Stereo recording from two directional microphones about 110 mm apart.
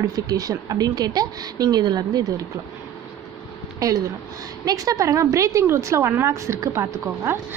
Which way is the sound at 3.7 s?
30° right (ahead or behind).